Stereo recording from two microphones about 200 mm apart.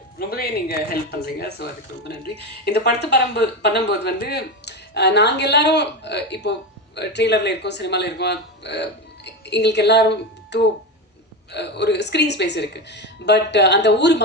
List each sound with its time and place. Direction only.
0.2 s speech: 50° left (ahead or behind)